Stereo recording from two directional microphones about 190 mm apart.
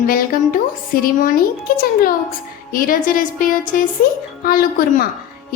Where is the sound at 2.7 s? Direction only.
45° left (ahead or behind).